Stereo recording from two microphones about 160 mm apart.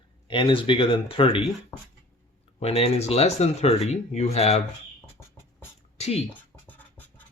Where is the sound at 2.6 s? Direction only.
40° left (ahead or behind).